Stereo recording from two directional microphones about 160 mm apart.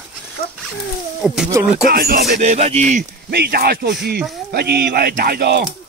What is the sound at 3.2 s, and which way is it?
Speech, 85° right.